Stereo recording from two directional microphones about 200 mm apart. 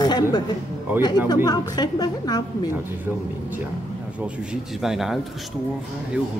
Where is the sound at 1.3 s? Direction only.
20° left (ahead or behind).